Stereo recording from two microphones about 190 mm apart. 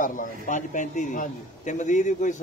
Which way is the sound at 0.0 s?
45° left (ahead or behind).